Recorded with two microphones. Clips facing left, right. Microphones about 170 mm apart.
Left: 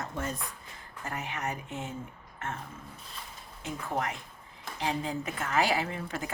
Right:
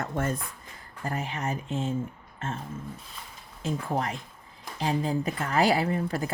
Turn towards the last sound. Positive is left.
turn(degrees=-35)  # may be behind; listen again after turning